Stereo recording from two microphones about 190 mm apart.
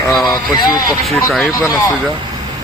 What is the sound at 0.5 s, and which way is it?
Speech, 20° left (ahead or behind).